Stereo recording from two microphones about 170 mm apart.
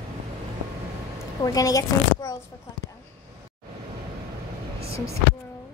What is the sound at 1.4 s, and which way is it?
Speech, 20° left (ahead or behind).